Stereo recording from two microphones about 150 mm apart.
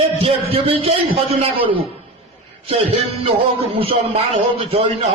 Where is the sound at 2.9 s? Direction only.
40° right (ahead or behind).